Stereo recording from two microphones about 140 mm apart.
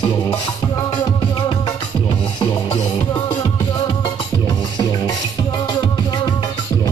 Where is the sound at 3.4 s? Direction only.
25° left (ahead or behind).